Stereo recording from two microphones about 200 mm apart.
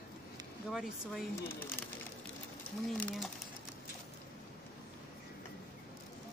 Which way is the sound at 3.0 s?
Centre (ahead or behind).